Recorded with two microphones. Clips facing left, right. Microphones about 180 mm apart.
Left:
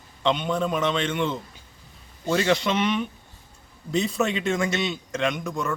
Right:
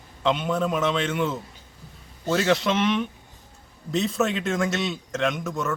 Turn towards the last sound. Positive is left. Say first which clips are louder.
# even
turn(degrees=0)  # may be behind; listen again after turning